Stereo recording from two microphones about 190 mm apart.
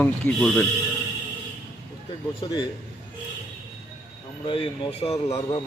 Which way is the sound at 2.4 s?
20° left (ahead or behind).